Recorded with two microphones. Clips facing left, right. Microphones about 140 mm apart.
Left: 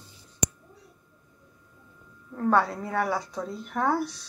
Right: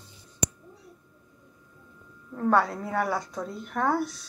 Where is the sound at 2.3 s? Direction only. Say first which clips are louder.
Even; centre (ahead or behind).